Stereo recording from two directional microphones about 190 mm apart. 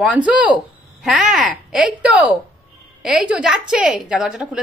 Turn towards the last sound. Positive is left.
turn(degrees=-5)  # may be behind; listen again after turning